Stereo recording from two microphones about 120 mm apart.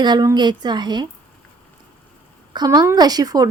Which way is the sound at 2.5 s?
35° right (ahead or behind).